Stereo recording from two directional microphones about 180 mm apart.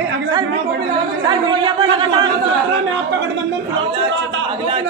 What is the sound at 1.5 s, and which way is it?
Speech, 25° right (ahead or behind).